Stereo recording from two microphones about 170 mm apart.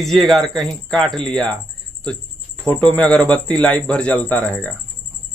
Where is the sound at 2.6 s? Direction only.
5° left (ahead or behind).